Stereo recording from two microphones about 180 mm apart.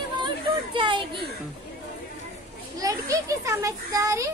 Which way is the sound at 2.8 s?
20° right (ahead or behind).